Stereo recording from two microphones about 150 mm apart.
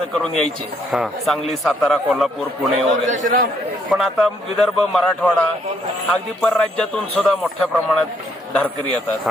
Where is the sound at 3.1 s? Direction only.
60° right (ahead or behind).